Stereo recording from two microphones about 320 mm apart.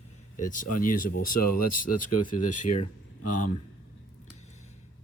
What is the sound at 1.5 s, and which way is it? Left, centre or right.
Speech, left.